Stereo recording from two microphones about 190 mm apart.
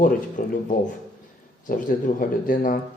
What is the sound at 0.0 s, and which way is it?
Speech, 45° left (ahead or behind).